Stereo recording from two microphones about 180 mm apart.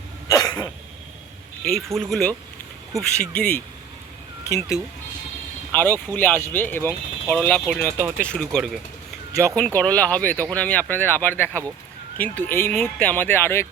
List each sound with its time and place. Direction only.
0.3 s cough: 20° left (ahead or behind)
1.9 s speech: centre (ahead or behind)